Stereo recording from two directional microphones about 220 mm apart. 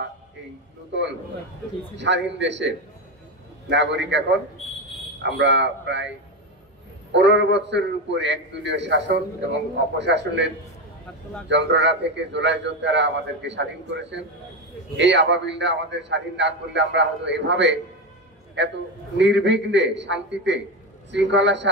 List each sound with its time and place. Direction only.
0.9 s a man's voice: 55° right (ahead or behind)
5.2 s a man's voice: 55° right (ahead or behind)
7.1 s a man's voice: 55° right (ahead or behind)